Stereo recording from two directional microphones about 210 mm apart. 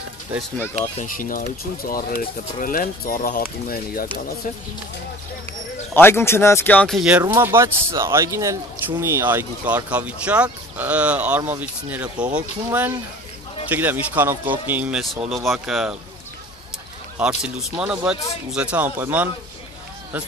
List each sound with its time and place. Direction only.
0.3 s speech: 10° right (ahead or behind)
1.0 s speech: 40° left (ahead or behind)
5.9 s speech: 10° left (ahead or behind)
17.2 s speech: 5° right (ahead or behind)